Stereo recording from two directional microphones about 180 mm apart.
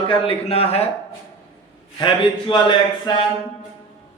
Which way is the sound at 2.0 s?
25° left (ahead or behind).